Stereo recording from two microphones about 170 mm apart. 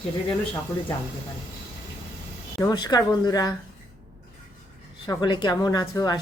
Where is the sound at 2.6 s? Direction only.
25° left (ahead or behind).